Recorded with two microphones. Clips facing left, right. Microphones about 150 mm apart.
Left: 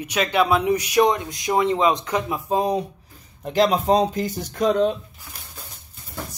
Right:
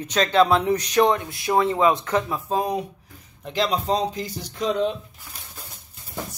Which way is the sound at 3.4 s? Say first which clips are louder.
Left 5 dB; 45° left (ahead or behind).